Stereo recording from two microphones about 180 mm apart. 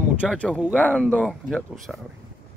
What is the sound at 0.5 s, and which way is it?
Speech, 5° right (ahead or behind).